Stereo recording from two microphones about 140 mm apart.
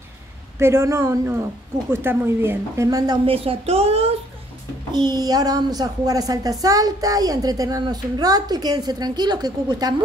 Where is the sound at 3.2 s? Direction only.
40° right (ahead or behind).